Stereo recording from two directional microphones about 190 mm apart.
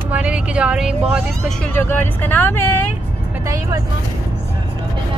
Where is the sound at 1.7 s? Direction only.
10° left (ahead or behind).